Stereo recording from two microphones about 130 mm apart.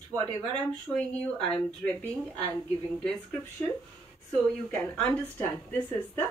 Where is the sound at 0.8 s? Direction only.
10° left (ahead or behind).